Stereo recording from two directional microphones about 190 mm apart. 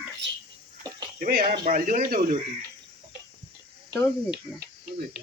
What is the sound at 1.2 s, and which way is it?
Speech, 40° right (ahead or behind).